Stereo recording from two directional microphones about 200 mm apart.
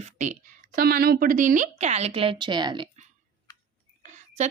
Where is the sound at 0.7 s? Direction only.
50° right (ahead or behind); by 2.9 s 20° right (ahead or behind).